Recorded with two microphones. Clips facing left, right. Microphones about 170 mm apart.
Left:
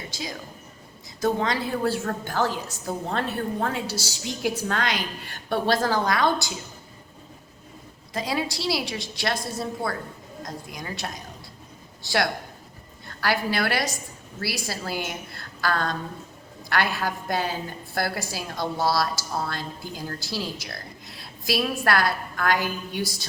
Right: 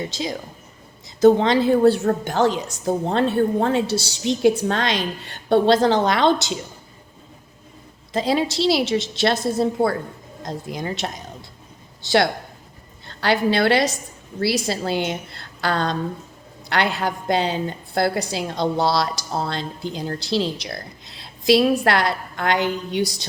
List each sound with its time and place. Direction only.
1.2 s a woman's voice: 25° right (ahead or behind)
8.1 s a woman's voice: 25° right (ahead or behind)
13.1 s a woman's voice: 25° right (ahead or behind)